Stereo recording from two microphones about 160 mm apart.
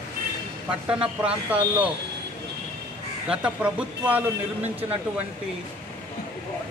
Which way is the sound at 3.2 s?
5° right (ahead or behind).